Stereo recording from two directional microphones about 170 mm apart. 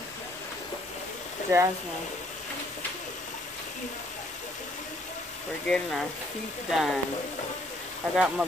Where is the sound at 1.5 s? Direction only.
20° right (ahead or behind).